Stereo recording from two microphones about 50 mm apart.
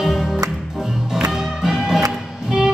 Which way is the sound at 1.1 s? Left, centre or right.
Centre.